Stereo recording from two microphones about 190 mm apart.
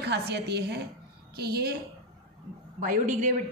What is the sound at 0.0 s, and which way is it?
A woman's voice, 60° right (ahead or behind).